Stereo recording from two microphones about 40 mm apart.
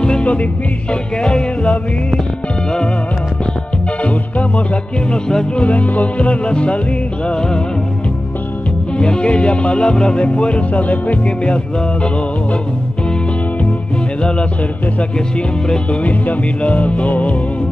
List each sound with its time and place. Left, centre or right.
0.0 s music: left
4.0 s music: left
5.1 s music: centre
5.6 s music: left
8.9 s music: left
16.0 s music: left